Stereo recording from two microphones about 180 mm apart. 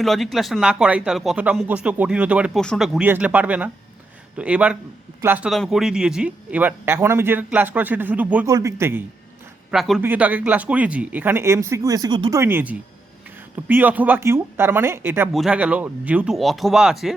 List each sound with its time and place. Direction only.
0.0 s speech: centre (ahead or behind)
5.5 s speech: centre (ahead or behind)
8.4 s speech: 20° right (ahead or behind)
9.7 s speech: centre (ahead or behind); by 12.4 s 25° right (ahead or behind)
12.4 s speech: 10° right (ahead or behind)